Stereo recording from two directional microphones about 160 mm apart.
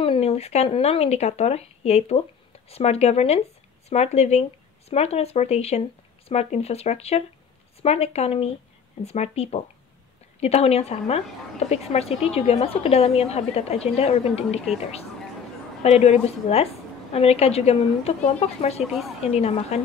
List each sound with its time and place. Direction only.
0.0 s speech: 35° left (ahead or behind)
15.8 s speech: 45° left (ahead or behind)